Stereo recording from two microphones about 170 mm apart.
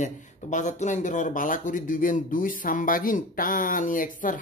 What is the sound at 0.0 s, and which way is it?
Speech, 45° left (ahead or behind).